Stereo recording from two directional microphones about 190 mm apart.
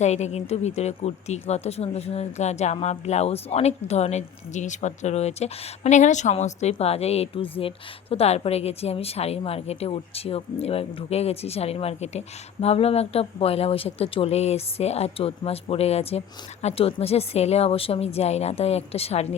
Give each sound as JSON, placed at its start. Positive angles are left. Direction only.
{"t": 0.0, "sound": "a woman's voice", "side_deg": 35}